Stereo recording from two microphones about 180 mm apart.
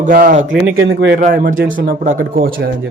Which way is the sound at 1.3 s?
55° right (ahead or behind).